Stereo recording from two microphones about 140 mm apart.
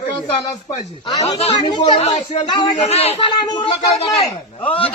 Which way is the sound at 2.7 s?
50° left (ahead or behind).